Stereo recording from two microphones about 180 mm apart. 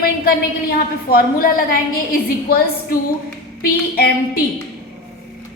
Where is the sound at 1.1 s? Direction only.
60° left (ahead or behind).